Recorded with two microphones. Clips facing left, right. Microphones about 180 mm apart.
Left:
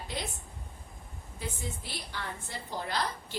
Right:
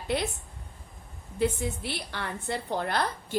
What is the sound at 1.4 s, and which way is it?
A woman's voice, 65° right (ahead or behind).